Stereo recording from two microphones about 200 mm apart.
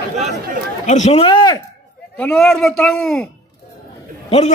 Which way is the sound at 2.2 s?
5° left (ahead or behind).